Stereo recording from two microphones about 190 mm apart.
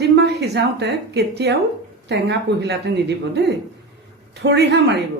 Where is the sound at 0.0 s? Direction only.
60° right (ahead or behind).